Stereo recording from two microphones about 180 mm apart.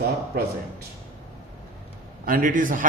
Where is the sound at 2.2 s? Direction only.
50° right (ahead or behind).